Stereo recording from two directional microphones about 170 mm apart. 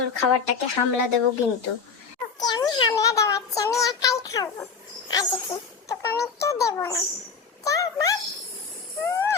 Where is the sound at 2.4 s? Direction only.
20° left (ahead or behind).